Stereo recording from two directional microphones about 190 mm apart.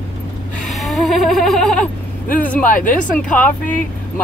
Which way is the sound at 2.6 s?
45° left (ahead or behind).